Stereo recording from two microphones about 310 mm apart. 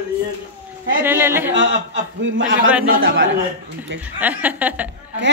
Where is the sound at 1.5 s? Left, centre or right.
Right.